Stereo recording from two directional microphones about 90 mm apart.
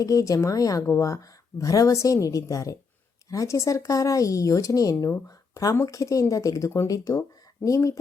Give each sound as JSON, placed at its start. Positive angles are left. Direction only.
{"t": 0.0, "sound": "speech", "side_deg": 40}